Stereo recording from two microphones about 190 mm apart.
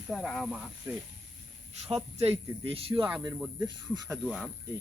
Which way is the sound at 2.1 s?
30° right (ahead or behind).